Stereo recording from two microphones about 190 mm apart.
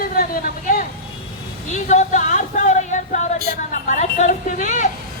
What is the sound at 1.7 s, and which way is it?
A woman's voice, 40° left (ahead or behind).